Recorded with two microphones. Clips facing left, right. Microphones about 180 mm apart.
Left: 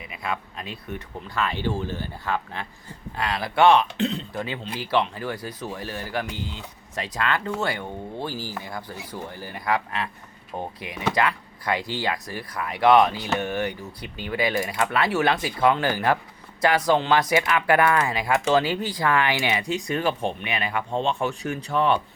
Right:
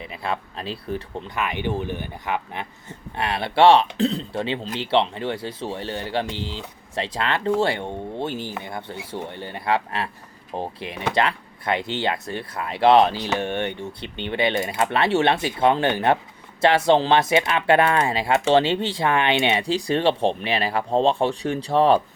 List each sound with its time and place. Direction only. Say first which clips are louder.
0.0 s speech: right 3 dB; 30° right (ahead or behind)
1.4 s speech: even; 15° right (ahead or behind); by 22.0 s 35° right (ahead or behind)